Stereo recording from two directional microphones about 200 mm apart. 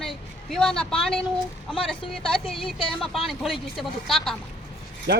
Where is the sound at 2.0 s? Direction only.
25° left (ahead or behind).